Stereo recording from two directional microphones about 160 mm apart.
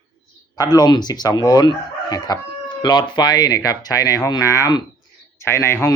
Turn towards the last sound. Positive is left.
turn(degrees=15)  # may be behind; listen again after turning